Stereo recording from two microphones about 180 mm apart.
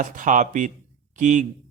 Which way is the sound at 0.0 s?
45° right (ahead or behind).